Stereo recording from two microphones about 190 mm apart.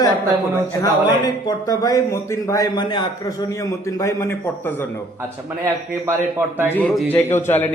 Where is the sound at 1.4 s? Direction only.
20° left (ahead or behind).